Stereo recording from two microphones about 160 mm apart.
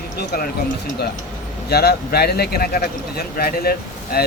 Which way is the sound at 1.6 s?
85° left.